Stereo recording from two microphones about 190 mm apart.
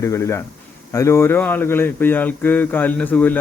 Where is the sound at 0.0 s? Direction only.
15° left (ahead or behind).